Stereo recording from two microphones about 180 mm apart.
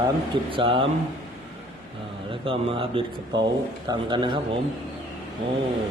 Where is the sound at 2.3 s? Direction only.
30° right (ahead or behind).